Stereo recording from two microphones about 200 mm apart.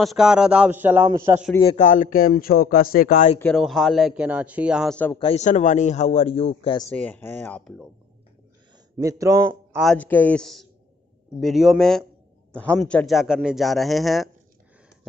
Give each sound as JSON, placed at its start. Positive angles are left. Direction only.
{"t": 0.0, "sound": "a man's voice", "side_deg": 0}
{"t": 1.6, "sound": "a man's voice", "side_deg": 35}
{"t": 3.5, "sound": "a man's voice", "side_deg": 0}
{"t": 5.1, "sound": "a man's voice", "side_deg": 30}
{"t": 7.0, "sound": "speech", "side_deg": 10}
{"t": 8.9, "sound": "speech", "side_deg": -15}
{"t": 9.8, "sound": "a man's voice", "side_deg": 5}